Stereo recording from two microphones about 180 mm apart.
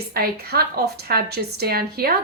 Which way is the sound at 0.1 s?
60° right (ahead or behind).